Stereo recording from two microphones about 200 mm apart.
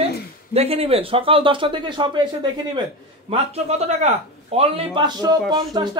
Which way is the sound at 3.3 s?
35° right (ahead or behind).